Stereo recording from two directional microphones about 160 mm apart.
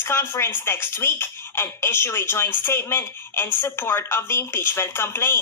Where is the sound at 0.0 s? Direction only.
15° left (ahead or behind).